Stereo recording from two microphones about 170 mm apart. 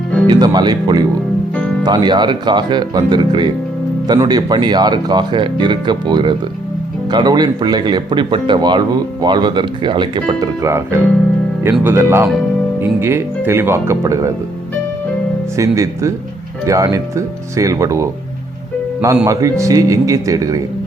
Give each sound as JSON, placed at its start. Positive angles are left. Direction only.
{"t": 0.3, "sound": "speech", "side_deg": -25}
{"t": 10.7, "sound": "speech", "side_deg": -15}
{"t": 15.5, "sound": "speech", "side_deg": -20}